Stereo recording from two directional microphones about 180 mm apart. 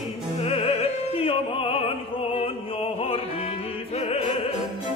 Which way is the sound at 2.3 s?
30° left (ahead or behind).